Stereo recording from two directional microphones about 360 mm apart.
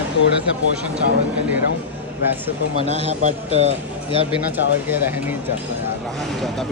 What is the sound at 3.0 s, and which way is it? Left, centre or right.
Speech, centre.